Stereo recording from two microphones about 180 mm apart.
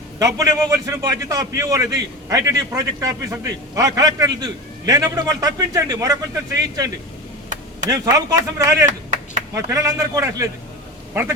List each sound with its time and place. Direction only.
0.2 s a man's voice: 20° right (ahead or behind)
8.9 s clapping: 45° right (ahead or behind)
9.6 s a man's voice: 15° right (ahead or behind)